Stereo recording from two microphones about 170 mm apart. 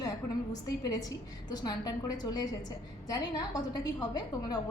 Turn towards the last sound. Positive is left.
turn(degrees=25)  # may be behind; listen again after turning